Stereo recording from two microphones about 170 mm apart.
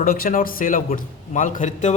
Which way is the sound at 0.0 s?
60° left (ahead or behind).